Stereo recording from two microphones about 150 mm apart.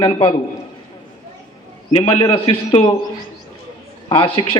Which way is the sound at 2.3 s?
40° left (ahead or behind).